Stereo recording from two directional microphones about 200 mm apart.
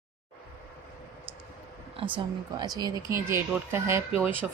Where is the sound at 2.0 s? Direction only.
25° right (ahead or behind).